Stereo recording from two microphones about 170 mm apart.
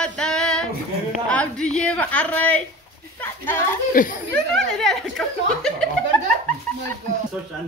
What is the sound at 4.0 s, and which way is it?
Speech, 55° left (ahead or behind).